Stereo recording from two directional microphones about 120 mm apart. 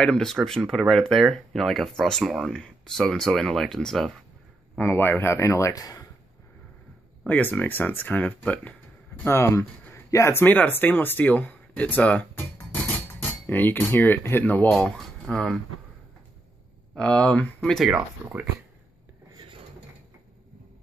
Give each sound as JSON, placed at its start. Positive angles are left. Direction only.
{"t": 0.0, "sound": "speech", "side_deg": 5}
{"t": 4.7, "sound": "speech", "side_deg": 15}
{"t": 7.2, "sound": "speech", "side_deg": 15}
{"t": 13.5, "sound": "speech", "side_deg": 15}
{"t": 14.7, "sound": "speech", "side_deg": 5}
{"t": 16.9, "sound": "speech", "side_deg": 10}
{"t": 17.8, "sound": "speech", "side_deg": -10}